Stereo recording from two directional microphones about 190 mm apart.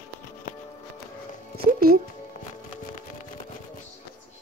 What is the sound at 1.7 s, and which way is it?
Music, 50° right (ahead or behind).